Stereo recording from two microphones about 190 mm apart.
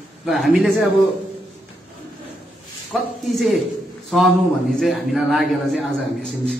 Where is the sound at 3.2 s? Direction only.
Centre (ahead or behind).